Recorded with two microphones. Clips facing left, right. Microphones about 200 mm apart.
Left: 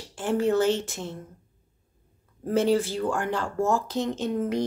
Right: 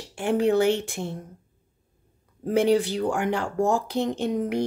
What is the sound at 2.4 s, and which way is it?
Speech, 15° right (ahead or behind).